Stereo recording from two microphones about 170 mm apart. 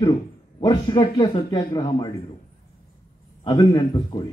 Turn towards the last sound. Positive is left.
turn(degrees=25)  # may be behind; listen again after turning